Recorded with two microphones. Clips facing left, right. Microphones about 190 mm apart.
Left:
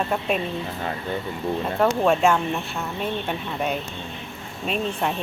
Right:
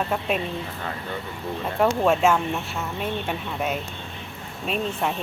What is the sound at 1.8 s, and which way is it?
Speech, 5° right (ahead or behind).